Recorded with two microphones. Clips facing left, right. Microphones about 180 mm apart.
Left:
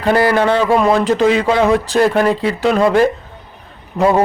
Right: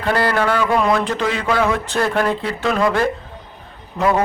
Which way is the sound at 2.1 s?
10° left (ahead or behind).